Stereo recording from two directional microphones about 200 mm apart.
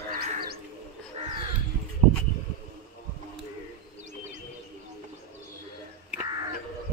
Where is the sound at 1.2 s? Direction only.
30° right (ahead or behind).